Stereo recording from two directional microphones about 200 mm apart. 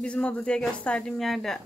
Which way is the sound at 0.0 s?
5° left (ahead or behind).